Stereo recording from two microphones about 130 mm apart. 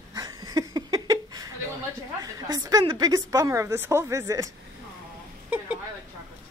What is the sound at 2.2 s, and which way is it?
A woman's voice, 25° right (ahead or behind).